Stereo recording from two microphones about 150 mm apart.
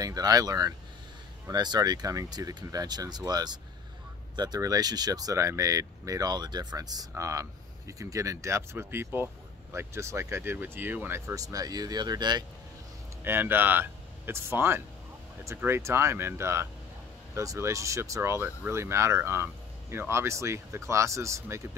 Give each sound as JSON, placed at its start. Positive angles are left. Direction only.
{"t": 0.0, "sound": "speech", "side_deg": -25}
{"t": 13.2, "sound": "speech", "side_deg": -15}